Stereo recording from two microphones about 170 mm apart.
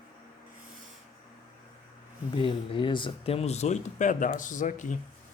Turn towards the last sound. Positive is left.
turn(degrees=50)  # may be behind; listen again after turning